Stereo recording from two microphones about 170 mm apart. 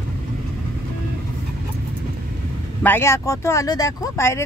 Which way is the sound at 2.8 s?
15° left (ahead or behind).